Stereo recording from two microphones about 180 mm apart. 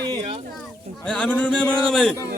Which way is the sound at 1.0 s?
5° left (ahead or behind).